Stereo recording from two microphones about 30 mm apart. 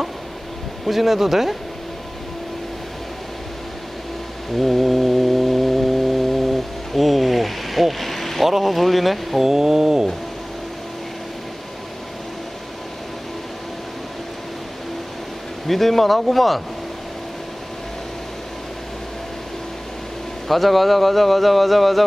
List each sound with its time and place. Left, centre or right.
0.8 s speech: centre
4.6 s a sound: centre
8.5 s speech: centre
9.4 s speech: centre
15.6 s speech: centre
20.4 s speech: centre